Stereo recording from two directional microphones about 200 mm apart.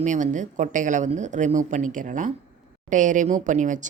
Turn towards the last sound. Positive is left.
turn(degrees=-40)  # may be behind; listen again after turning